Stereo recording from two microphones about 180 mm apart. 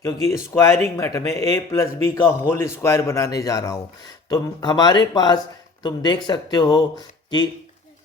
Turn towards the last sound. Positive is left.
turn(degrees=20)  # may be behind; listen again after turning